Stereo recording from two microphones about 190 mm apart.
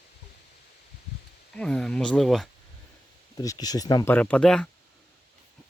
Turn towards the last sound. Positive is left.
turn(degrees=5)  # may be behind; listen again after turning